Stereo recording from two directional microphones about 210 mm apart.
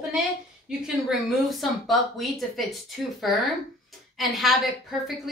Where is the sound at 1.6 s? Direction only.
Centre (ahead or behind).